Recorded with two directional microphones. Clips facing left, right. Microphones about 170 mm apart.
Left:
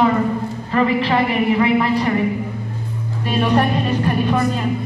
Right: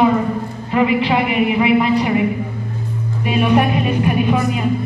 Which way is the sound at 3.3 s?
10° right (ahead or behind).